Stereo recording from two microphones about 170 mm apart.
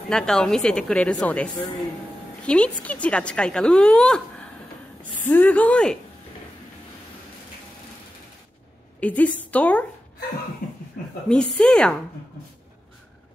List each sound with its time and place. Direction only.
0.1 s a woman's voice: 5° left (ahead or behind)
9.0 s a woman's voice: 10° left (ahead or behind)
10.6 s a sound: 55° left (ahead or behind)
11.2 s a woman's voice: 5° left (ahead or behind)